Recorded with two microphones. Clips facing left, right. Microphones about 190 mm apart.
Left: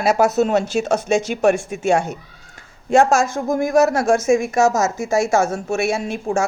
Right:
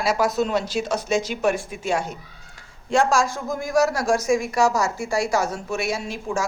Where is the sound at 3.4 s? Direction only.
55° left (ahead or behind).